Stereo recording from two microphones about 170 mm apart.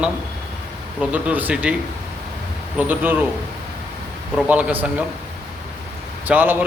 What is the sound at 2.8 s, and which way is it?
Speech, 10° right (ahead or behind).